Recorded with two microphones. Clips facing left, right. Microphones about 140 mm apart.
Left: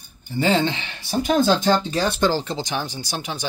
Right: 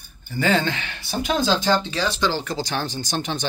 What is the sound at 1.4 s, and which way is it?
Speech, 50° left (ahead or behind).